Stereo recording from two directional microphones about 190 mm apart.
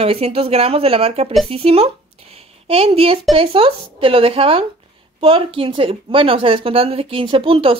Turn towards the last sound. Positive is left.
turn(degrees=-30)  # may be behind; listen again after turning